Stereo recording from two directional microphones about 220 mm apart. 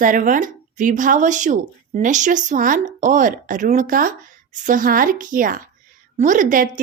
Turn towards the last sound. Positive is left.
turn(degrees=-35)  # may be behind; listen again after turning